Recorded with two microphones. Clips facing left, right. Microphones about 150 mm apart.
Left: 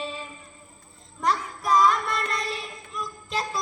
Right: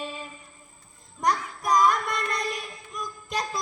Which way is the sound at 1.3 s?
15° right (ahead or behind).